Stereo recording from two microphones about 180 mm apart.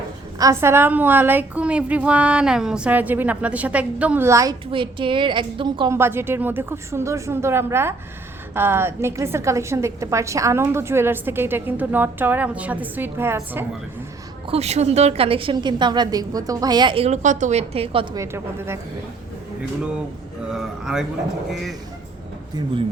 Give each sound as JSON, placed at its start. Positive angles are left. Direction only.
{"t": 0.3, "sound": "a woman's voice", "side_deg": -15}
{"t": 4.7, "sound": "a woman's voice", "side_deg": -30}
{"t": 6.0, "sound": "a woman's voice", "side_deg": -15}
{"t": 14.4, "sound": "a woman's voice", "side_deg": -35}
{"t": 20.5, "sound": "speech", "side_deg": 0}